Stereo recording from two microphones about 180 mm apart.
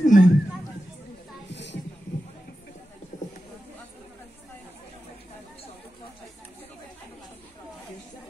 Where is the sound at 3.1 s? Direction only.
45° left (ahead or behind).